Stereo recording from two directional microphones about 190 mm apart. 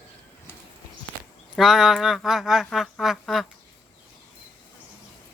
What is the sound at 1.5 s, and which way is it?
Speech, centre (ahead or behind).